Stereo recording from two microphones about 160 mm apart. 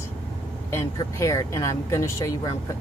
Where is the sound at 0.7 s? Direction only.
20° left (ahead or behind).